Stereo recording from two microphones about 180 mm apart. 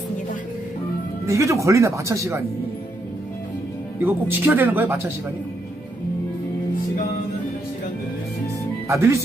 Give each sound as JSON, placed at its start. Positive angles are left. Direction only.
{"t": 1.3, "sound": "speech", "side_deg": -15}
{"t": 4.0, "sound": "speech", "side_deg": -10}
{"t": 8.9, "sound": "speech", "side_deg": -15}